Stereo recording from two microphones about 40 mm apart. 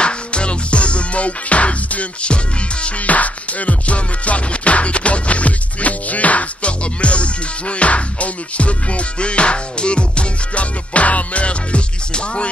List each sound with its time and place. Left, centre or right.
0.0 s music: left
3.1 s music: left